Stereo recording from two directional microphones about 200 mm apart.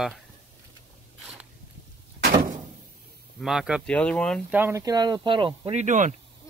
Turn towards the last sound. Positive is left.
turn(degrees=-40)  # may be behind; listen again after turning